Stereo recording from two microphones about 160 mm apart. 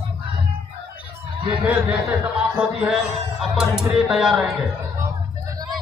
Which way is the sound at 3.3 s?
5° right (ahead or behind).